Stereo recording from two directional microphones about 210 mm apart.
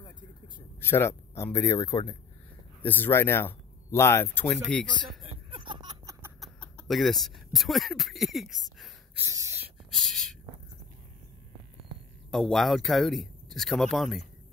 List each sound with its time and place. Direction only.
0.7 s speech: 10° left (ahead or behind)
5.2 s a sound: 25° right (ahead or behind)
6.4 s speech: 5° left (ahead or behind)
9.2 s speech: 15° right (ahead or behind)
9.9 s speech: centre (ahead or behind)
12.3 s speech: centre (ahead or behind)